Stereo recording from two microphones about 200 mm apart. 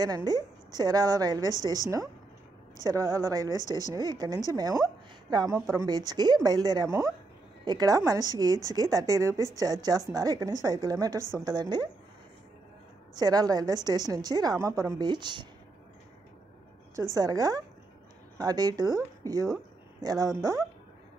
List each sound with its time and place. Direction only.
0.0 s a woman's voice: 20° right (ahead or behind)
13.1 s a woman's voice: 20° right (ahead or behind)
17.1 s a woman's voice: 20° right (ahead or behind)